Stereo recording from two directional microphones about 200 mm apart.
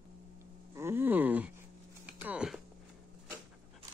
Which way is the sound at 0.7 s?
10° right (ahead or behind).